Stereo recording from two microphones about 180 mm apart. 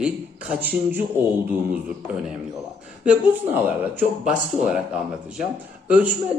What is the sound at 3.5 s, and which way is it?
Speech, 10° right (ahead or behind).